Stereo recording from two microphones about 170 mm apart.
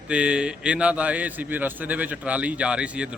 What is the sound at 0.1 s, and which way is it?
A man's voice, 5° right (ahead or behind).